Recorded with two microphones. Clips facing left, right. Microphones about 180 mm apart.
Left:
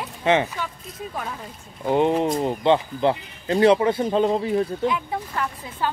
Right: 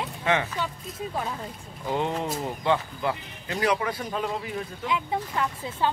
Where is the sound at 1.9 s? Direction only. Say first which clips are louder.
Left 8 dB; 20° left (ahead or behind).